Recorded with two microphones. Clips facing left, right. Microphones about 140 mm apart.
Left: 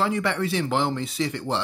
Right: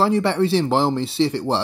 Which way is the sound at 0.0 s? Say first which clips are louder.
Right 6 dB; 35° right (ahead or behind).